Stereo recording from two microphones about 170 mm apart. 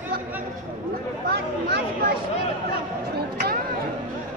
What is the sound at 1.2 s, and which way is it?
Speech, 65° right (ahead or behind).